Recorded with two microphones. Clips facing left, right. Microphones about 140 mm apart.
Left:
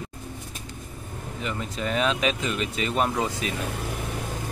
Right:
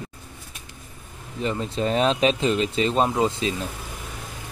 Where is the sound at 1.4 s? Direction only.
30° right (ahead or behind).